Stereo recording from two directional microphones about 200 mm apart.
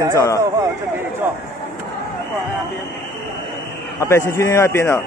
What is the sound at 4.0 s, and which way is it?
Speech, 15° left (ahead or behind).